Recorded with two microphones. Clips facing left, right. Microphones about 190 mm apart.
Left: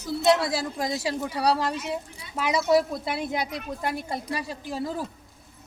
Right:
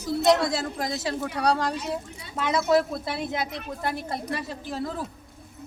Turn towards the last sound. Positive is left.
turn(degrees=10)  # may be behind; listen again after turning